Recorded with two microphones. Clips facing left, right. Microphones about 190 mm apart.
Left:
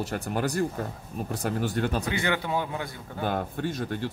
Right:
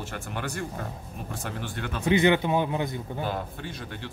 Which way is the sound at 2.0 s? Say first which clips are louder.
Right 7 dB; 20° right (ahead or behind).